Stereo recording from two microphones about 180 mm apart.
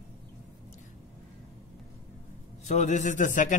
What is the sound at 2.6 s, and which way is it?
Speech, 40° left (ahead or behind).